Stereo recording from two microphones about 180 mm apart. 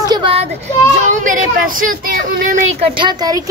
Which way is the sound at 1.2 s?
50° right (ahead or behind).